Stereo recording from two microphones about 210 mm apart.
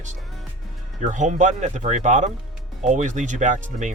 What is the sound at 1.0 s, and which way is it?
Speech, 35° right (ahead or behind).